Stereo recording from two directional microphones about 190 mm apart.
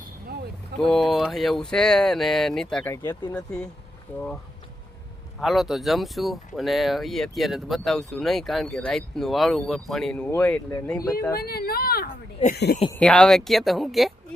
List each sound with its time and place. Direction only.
0.8 s speech: centre (ahead or behind)
2.9 s speech: 15° left (ahead or behind)
3.3 s speech: 5° left (ahead or behind)
5.4 s speech: centre (ahead or behind)
11.3 s speech: 55° left (ahead or behind)
12.9 s speech: 5° left (ahead or behind)